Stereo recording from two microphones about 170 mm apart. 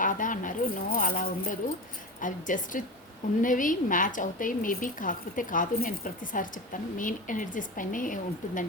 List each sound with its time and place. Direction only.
0.0 s keys jangling: 50° left (ahead or behind)
2.2 s a woman's voice: 50° left (ahead or behind)